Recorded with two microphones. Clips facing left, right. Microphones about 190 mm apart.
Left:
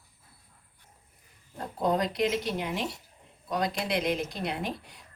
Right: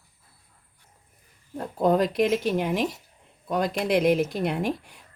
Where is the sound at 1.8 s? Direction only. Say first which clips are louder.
Right 6 dB; 55° right (ahead or behind).